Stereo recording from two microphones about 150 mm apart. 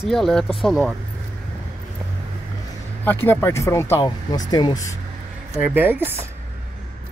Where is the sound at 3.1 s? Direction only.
15° left (ahead or behind).